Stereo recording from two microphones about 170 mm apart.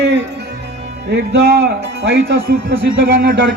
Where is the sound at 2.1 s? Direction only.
65° right (ahead or behind).